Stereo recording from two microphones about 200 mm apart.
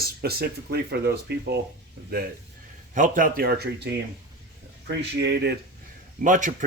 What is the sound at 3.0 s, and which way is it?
Speech, 40° right (ahead or behind).